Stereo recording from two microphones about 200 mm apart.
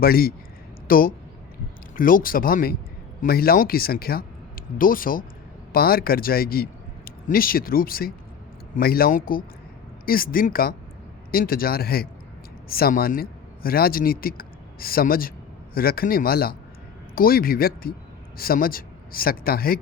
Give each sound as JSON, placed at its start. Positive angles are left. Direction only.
{"t": 0.0, "sound": "a man's voice", "side_deg": 50}